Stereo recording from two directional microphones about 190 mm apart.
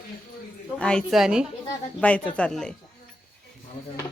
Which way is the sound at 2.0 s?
5° left (ahead or behind).